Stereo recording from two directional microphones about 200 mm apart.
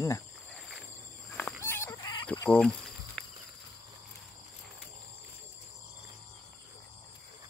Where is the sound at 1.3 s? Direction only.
10° left (ahead or behind).